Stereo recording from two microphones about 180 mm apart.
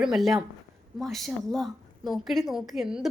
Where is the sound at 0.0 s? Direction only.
Centre (ahead or behind).